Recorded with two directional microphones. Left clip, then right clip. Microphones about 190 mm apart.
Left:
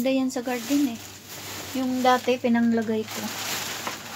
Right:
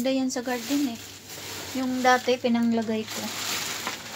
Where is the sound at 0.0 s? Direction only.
10° left (ahead or behind).